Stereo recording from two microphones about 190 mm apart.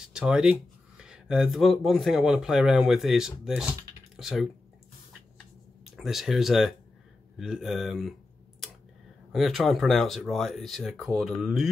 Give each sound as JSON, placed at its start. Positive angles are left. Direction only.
{"t": 0.0, "sound": "speech", "side_deg": -5}
{"t": 5.9, "sound": "speech", "side_deg": 0}
{"t": 8.6, "sound": "tick", "side_deg": 0}
{"t": 9.3, "sound": "speech", "side_deg": 0}